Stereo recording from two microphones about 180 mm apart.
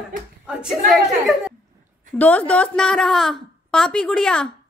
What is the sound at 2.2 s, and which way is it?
A woman's voice, 10° left (ahead or behind).